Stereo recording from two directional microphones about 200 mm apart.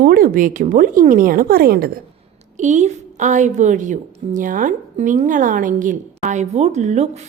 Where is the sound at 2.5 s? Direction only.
35° right (ahead or behind).